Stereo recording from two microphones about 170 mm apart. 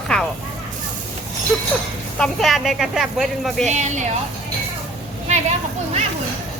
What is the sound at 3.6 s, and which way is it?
Speech, 45° right (ahead or behind).